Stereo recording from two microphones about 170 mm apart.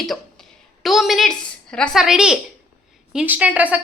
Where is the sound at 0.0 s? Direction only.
Centre (ahead or behind).